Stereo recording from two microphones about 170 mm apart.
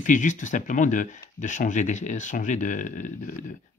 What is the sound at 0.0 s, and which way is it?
Speech, 50° left (ahead or behind).